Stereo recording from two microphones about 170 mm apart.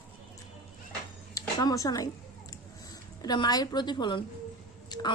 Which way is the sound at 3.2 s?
25° left (ahead or behind).